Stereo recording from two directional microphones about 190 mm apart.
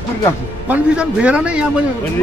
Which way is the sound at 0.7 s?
5° right (ahead or behind).